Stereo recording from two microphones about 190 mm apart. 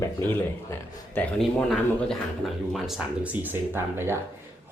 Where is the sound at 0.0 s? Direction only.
10° left (ahead or behind).